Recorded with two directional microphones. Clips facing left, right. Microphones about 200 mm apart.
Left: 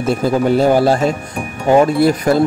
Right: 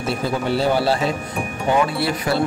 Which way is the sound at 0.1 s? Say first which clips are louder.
Left 8 dB; 50° left (ahead or behind).